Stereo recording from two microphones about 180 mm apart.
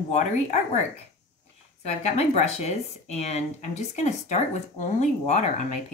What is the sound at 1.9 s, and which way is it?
Speech, 40° left (ahead or behind).